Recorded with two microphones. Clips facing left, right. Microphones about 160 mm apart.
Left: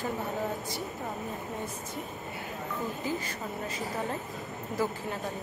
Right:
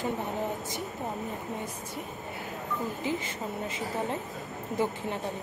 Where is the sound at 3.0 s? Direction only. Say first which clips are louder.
Right 2 dB; 20° right (ahead or behind).